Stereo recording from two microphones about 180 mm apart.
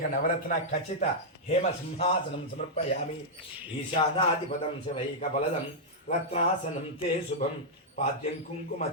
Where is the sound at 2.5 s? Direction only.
40° left (ahead or behind).